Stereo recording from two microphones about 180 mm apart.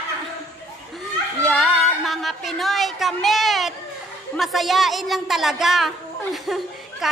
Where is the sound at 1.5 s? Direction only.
Centre (ahead or behind).